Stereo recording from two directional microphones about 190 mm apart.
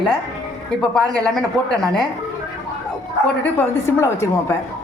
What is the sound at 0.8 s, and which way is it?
A woman's voice, 5° left (ahead or behind).